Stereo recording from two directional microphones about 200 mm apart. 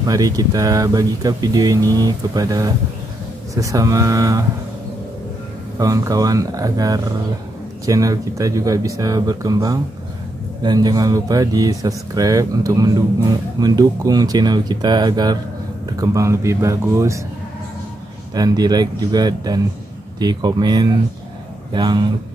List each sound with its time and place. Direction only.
0.0 s speech: 20° right (ahead or behind)
5.8 s speech: 15° right (ahead or behind)
18.3 s speech: 20° right (ahead or behind)